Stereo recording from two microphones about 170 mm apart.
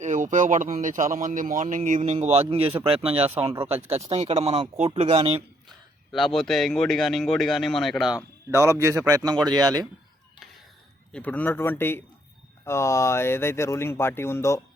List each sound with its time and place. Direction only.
0.0 s speech: 45° right (ahead or behind)
2.1 s speech: 35° right (ahead or behind)
6.1 s a man's voice: centre (ahead or behind)
8.5 s speech: 15° right (ahead or behind)
11.1 s speech: 10° left (ahead or behind)